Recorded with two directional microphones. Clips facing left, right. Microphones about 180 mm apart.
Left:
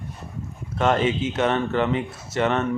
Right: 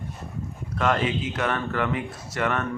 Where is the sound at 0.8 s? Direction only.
25° left (ahead or behind).